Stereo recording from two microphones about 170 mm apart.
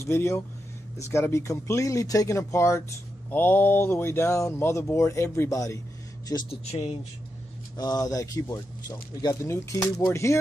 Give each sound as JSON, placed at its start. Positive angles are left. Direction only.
{"t": 0.0, "sound": "speech", "side_deg": 15}
{"t": 6.5, "sound": "speech", "side_deg": 40}
{"t": 7.7, "sound": "speech", "side_deg": 20}